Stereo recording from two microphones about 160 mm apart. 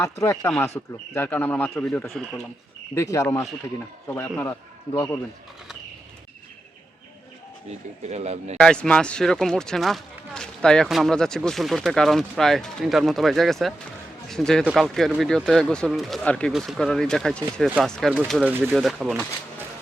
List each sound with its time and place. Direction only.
0.0 s a man's voice: 20° left (ahead or behind)
2.9 s a man's voice: 20° left (ahead or behind)
7.7 s speech: 40° right (ahead or behind)
8.5 s speech: 5° left (ahead or behind)